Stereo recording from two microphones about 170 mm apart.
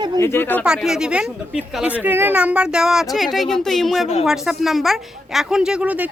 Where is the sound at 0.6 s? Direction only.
5° right (ahead or behind).